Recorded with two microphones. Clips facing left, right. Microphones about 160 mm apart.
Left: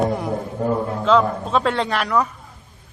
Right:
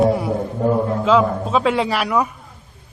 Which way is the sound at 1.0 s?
5° right (ahead or behind).